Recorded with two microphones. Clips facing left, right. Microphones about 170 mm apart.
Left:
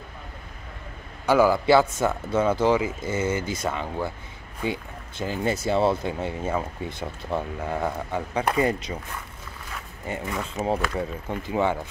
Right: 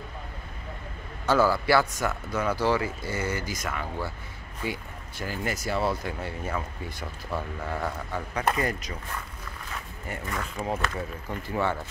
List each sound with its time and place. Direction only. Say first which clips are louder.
1.2 s speech: left 4 dB; 15° left (ahead or behind)
5.2 s speech: left 6 dB; 25° left (ahead or behind)
10.0 s speech: left 4 dB; 20° left (ahead or behind)